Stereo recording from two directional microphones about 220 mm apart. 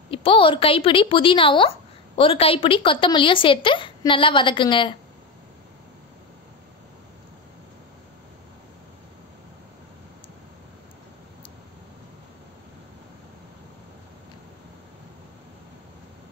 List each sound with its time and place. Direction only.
0.1 s a woman's voice: 25° left (ahead or behind)